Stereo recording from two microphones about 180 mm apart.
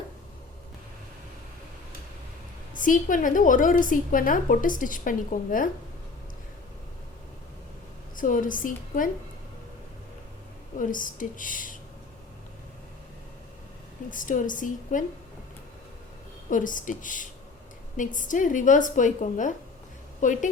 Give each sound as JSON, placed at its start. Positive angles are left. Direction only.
{"t": 2.7, "sound": "a woman's voice", "side_deg": 45}
{"t": 8.1, "sound": "a woman's voice", "side_deg": 50}
{"t": 10.8, "sound": "a woman's voice", "side_deg": 50}
{"t": 14.1, "sound": "a woman's voice", "side_deg": 45}
{"t": 16.5, "sound": "a woman's voice", "side_deg": 45}